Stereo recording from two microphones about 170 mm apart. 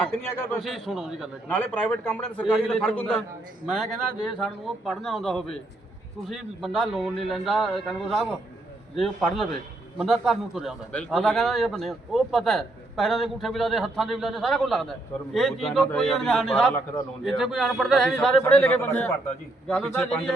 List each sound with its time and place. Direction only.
0.2 s a man's voice: 15° left (ahead or behind)
0.6 s a man's voice: centre (ahead or behind)
1.5 s a man's voice: 10° left (ahead or behind)
4.4 s a man's voice: centre (ahead or behind)